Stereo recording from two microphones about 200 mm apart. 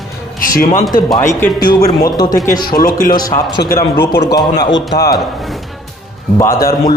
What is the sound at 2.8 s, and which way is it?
Speech, 45° left (ahead or behind).